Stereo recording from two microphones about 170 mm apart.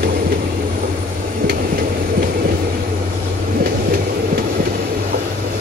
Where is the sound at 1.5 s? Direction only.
65° right (ahead or behind).